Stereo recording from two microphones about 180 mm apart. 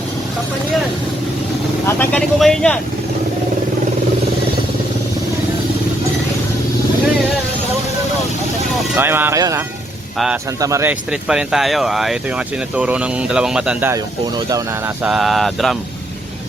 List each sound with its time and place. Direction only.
1.9 s speech: 10° left (ahead or behind)
9.0 s speech: 10° right (ahead or behind)
11.1 s speech: 5° right (ahead or behind)
13.9 s speech: 20° right (ahead or behind)
15.0 s speech: centre (ahead or behind)